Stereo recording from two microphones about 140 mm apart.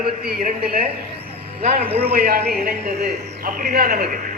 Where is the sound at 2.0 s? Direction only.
90° right.